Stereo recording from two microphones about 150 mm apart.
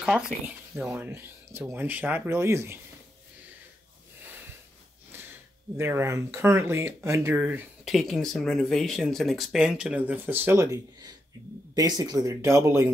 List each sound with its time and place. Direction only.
0.8 s speech: 15° right (ahead or behind)
5.8 s speech: 15° right (ahead or behind)
7.8 s speech: centre (ahead or behind); by 12.9 s 15° right (ahead or behind)